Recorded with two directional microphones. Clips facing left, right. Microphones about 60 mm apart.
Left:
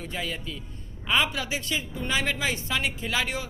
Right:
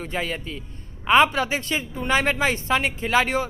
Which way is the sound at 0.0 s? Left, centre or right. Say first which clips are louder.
Right 5 dB; right.